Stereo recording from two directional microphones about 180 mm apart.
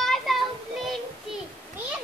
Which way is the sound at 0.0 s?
Centre (ahead or behind).